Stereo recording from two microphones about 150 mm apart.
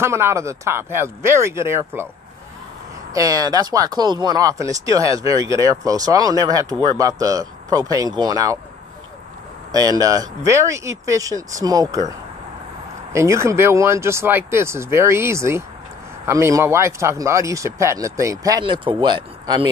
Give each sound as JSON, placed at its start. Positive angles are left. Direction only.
{"t": 0.0, "sound": "speech", "side_deg": -20}
{"t": 3.1, "sound": "speech", "side_deg": -25}
{"t": 9.7, "sound": "speech", "side_deg": -25}
{"t": 13.1, "sound": "speech", "side_deg": -20}